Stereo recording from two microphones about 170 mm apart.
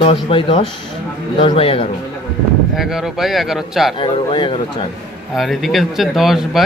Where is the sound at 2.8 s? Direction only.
Centre (ahead or behind).